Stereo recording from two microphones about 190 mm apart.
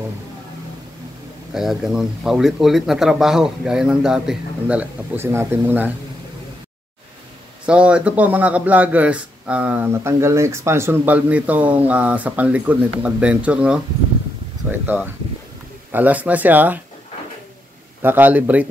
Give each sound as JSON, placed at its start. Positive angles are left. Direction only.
{"t": 1.5, "sound": "speech", "side_deg": 0}
{"t": 7.6, "sound": "a man's voice", "side_deg": -5}
{"t": 18.0, "sound": "a man's voice", "side_deg": -10}